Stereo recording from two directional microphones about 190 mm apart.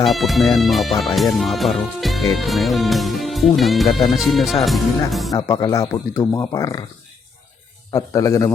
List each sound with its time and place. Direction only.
0.0 s speech: centre (ahead or behind)
5.3 s speech: 20° left (ahead or behind)
7.9 s speech: 15° left (ahead or behind)